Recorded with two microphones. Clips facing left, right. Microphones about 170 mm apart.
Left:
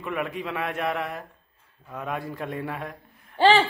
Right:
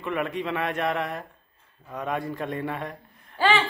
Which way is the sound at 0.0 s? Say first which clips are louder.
Right 2 dB; centre (ahead or behind).